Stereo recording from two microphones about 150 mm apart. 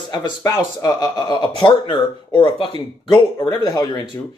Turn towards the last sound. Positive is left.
turn(degrees=25)  # may be behind; listen again after turning